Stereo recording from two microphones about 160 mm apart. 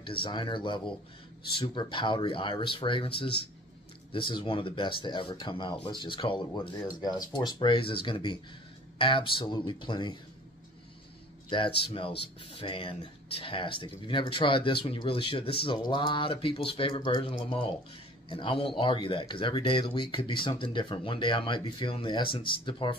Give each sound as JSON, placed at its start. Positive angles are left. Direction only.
{"t": 0.0, "sound": "speech", "side_deg": 30}
{"t": 11.4, "sound": "speech", "side_deg": 30}